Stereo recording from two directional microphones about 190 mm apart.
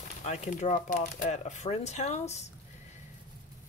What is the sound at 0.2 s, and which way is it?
Speech, 40° left (ahead or behind).